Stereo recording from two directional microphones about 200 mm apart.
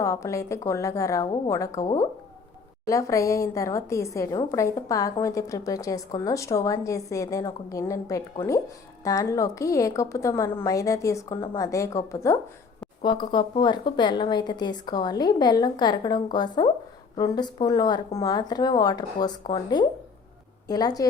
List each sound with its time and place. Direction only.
0.0 s a woman's voice: 15° left (ahead or behind)